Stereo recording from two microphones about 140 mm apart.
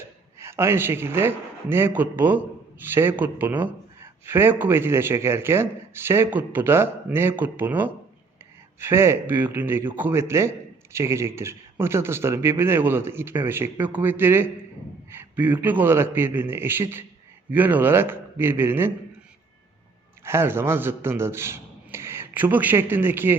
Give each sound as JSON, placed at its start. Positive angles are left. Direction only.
{"t": 0.3, "sound": "a woman's voice", "side_deg": -20}
{"t": 20.2, "sound": "a man's voice", "side_deg": -20}